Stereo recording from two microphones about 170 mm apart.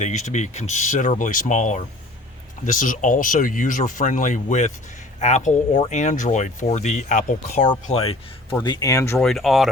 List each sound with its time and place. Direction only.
0.0 s speech: 45° left (ahead or behind)
8.6 s speech: 25° left (ahead or behind)
9.1 s speech: centre (ahead or behind)